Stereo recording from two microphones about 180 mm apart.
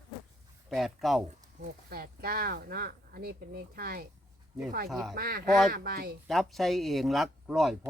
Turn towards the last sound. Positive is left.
turn(degrees=0)  # may be behind; listen again after turning